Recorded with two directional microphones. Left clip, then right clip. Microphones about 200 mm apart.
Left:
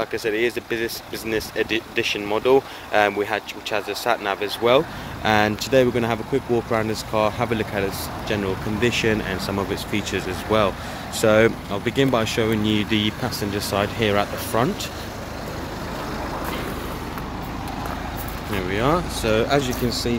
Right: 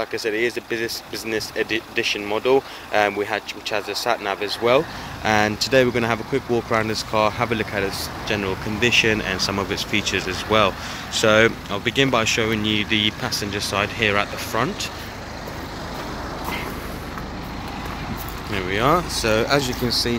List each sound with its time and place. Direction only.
0.0 s speech: 5° left (ahead or behind); by 14.9 s 20° left (ahead or behind)
18.5 s speech: centre (ahead or behind)